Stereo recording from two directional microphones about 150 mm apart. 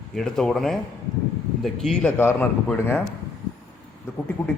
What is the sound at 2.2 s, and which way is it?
Speech, 15° left (ahead or behind).